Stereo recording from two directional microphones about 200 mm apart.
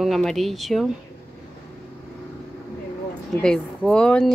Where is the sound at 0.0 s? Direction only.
Centre (ahead or behind).